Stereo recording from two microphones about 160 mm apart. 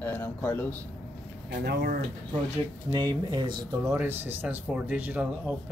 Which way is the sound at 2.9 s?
25° right (ahead or behind).